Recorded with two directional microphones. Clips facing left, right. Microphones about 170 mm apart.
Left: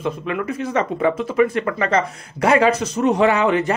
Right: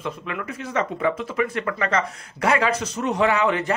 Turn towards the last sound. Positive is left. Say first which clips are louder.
# left 4 dB
turn(degrees=20)  # may be behind; listen again after turning